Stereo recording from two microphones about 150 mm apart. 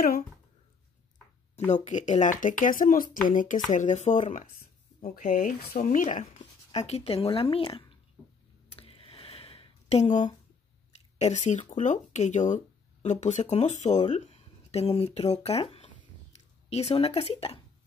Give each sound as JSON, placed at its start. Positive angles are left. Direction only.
{"t": 1.7, "sound": "speech", "side_deg": 50}
{"t": 5.9, "sound": "speech", "side_deg": 55}
{"t": 6.8, "sound": "speech", "side_deg": 45}
{"t": 8.6, "sound": "a sound", "side_deg": 40}
{"t": 11.4, "sound": "speech", "side_deg": 55}